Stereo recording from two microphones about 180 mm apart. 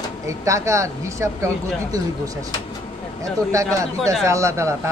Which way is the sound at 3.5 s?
15° right (ahead or behind).